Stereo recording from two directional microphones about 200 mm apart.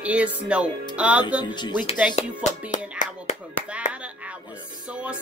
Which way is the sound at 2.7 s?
40° left (ahead or behind).